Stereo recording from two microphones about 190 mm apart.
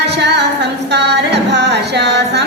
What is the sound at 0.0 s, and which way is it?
Music, 60° right (ahead or behind).